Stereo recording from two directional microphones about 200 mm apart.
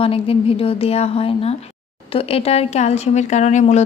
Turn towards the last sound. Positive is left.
turn(degrees=35)  # may be behind; listen again after turning